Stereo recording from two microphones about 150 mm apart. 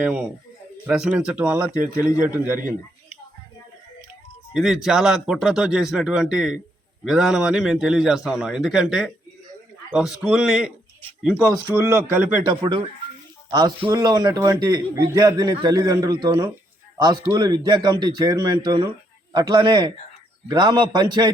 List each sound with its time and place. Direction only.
0.0 s speech: 5° right (ahead or behind)
1.8 s a man's voice: 65° right (ahead or behind)
2.3 s speech: 10° right (ahead or behind)
4.5 s a man's voice: 5° right (ahead or behind)
11.7 s a man's voice: centre (ahead or behind)
12.1 s speech: 10° right (ahead or behind)
12.4 s a man's voice: 30° right (ahead or behind)